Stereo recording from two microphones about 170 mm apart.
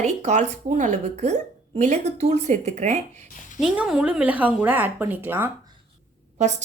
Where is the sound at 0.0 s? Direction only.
45° right (ahead or behind).